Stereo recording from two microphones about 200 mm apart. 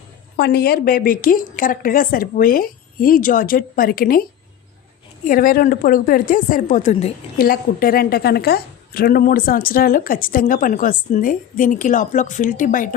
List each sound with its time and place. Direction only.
0.3 s a woman's voice: 55° left (ahead or behind)
5.2 s a woman's voice: 45° left (ahead or behind)
7.3 s a woman's voice: 45° left (ahead or behind)